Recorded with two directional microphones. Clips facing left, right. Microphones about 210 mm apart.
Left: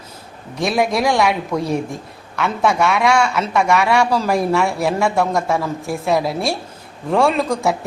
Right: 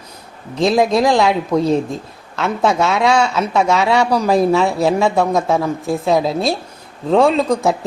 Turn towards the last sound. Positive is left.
turn(degrees=-20)  # may be behind; listen again after turning